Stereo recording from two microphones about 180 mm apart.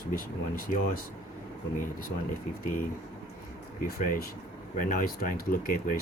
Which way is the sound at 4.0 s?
50° left (ahead or behind).